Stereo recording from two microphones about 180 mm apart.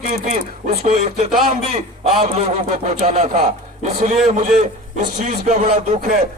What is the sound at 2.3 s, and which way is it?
A man's voice, 45° right (ahead or behind).